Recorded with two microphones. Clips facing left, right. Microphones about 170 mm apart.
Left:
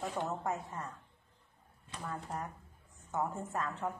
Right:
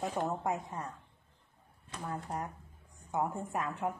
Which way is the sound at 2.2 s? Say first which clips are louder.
Right 2 dB; 15° right (ahead or behind).